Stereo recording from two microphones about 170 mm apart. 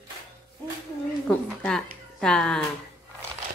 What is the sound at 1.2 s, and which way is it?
Speech, 5° left (ahead or behind).